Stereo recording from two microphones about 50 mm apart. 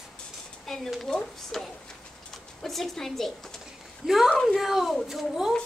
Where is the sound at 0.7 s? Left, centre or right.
Centre.